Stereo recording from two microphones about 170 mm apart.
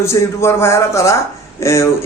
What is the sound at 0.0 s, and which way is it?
Speech, 15° left (ahead or behind).